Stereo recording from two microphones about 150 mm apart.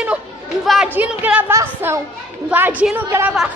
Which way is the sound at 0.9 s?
10° right (ahead or behind).